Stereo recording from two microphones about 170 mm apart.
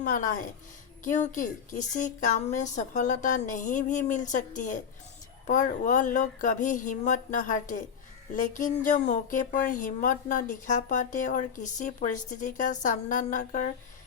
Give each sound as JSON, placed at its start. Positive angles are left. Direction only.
{"t": 0.0, "sound": "speech", "side_deg": 50}